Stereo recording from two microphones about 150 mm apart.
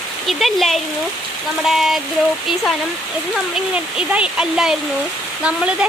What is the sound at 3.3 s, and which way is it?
A woman's voice, 5° right (ahead or behind).